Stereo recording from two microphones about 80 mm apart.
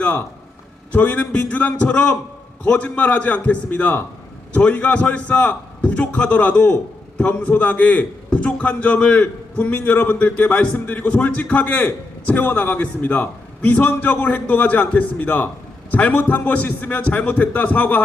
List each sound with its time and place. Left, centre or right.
0.9 s a man's voice: centre